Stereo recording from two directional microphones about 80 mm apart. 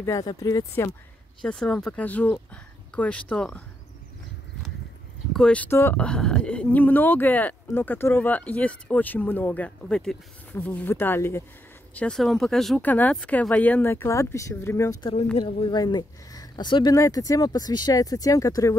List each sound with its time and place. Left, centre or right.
0.2 s speech: left
1.4 s speech: centre
2.0 s speech: centre
5.3 s speech: centre
5.7 s speech: left
5.9 s speech: centre
9.8 s speech: centre; by 11.4 s left
11.9 s speech: centre
12.2 s speech: centre
12.8 s speech: left
13.8 s speech: left
15.8 s speech: left
16.9 s speech: left